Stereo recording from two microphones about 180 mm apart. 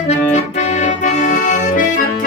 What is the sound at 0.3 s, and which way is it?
Accordion, 40° left (ahead or behind).